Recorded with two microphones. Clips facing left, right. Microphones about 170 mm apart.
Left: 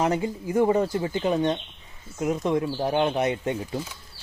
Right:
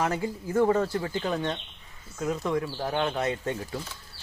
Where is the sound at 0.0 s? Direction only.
20° left (ahead or behind).